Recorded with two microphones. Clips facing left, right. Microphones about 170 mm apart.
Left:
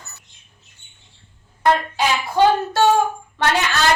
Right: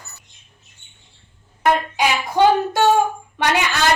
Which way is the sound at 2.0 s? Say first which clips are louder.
Even; 15° right (ahead or behind).